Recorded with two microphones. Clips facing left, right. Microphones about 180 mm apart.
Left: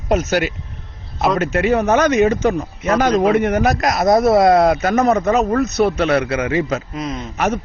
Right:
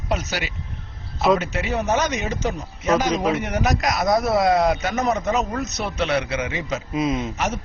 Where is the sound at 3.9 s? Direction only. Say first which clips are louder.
Left 8 dB; 30° left (ahead or behind).